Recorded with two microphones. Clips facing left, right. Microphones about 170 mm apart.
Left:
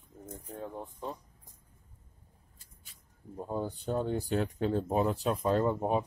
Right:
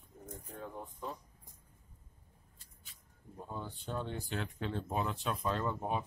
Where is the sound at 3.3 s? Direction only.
40° left (ahead or behind).